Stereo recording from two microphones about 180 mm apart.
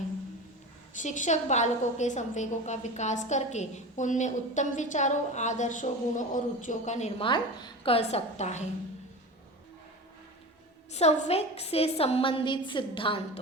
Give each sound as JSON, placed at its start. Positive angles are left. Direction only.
{"t": 1.0, "sound": "a woman's voice", "side_deg": 45}
{"t": 7.3, "sound": "a woman's voice", "side_deg": 25}
{"t": 10.9, "sound": "a woman's voice", "side_deg": 35}